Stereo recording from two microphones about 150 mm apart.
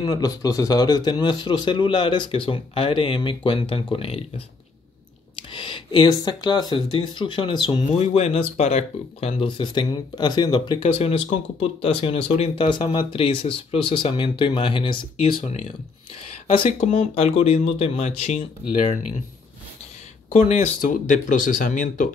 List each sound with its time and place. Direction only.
0.0 s a man's voice: 25° left (ahead or behind)
5.5 s a man's voice: 35° left (ahead or behind)
7.9 s a man's voice: 45° left (ahead or behind)
20.3 s speech: 45° left (ahead or behind)
20.8 s speech: 60° left (ahead or behind)